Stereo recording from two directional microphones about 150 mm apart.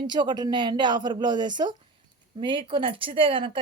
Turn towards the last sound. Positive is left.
turn(degrees=-35)  # may be behind; listen again after turning